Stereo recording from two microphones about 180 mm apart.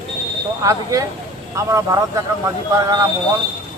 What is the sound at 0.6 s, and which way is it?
Speech, 20° right (ahead or behind).